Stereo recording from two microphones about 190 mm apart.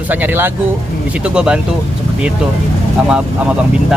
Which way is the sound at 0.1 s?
10° right (ahead or behind).